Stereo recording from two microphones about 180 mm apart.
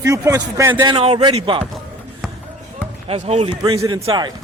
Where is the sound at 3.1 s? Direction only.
35° right (ahead or behind).